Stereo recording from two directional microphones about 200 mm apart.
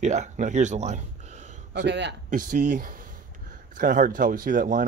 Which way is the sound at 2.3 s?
40° right (ahead or behind).